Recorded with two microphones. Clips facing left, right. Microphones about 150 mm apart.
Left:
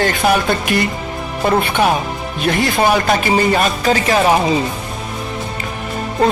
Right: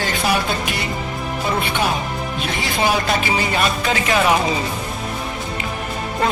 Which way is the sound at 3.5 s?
35° left (ahead or behind).